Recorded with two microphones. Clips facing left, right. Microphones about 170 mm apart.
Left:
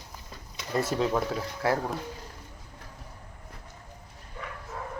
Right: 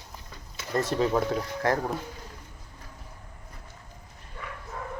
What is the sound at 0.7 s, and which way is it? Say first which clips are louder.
A man's voice: right 1 dB; 5° left (ahead or behind).